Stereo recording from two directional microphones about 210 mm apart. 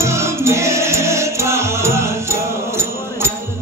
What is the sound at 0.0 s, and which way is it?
Music, 15° right (ahead or behind).